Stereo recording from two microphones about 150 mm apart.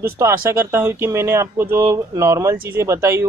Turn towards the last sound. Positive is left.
turn(degrees=-15)  # may be behind; listen again after turning